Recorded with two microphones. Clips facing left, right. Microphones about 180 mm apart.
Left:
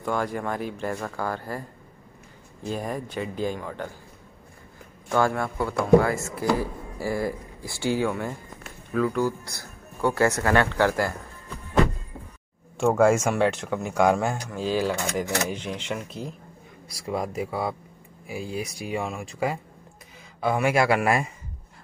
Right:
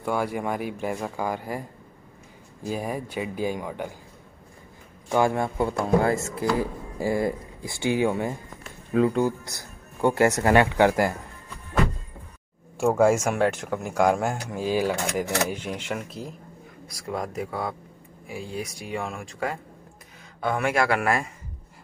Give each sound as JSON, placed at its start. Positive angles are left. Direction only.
{"t": 0.0, "sound": "speech", "side_deg": -10}
{"t": 5.1, "sound": "speech", "side_deg": -20}
{"t": 12.7, "sound": "speech", "side_deg": -5}
{"t": 16.9, "sound": "speech", "side_deg": 5}